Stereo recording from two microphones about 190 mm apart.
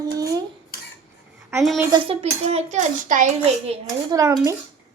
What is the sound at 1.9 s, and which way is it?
A child's voice, 30° right (ahead or behind).